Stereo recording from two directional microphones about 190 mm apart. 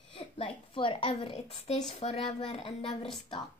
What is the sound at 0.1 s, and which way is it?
A woman's voice, 25° left (ahead or behind).